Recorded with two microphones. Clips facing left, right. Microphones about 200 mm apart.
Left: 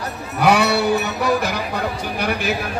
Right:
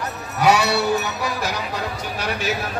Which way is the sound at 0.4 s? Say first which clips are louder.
Left 2 dB; 55° left (ahead or behind).